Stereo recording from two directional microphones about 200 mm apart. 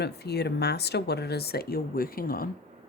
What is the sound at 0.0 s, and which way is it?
Speech, 55° left (ahead or behind).